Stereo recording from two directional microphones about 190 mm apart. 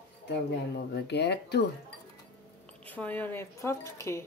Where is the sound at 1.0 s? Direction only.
60° left (ahead or behind).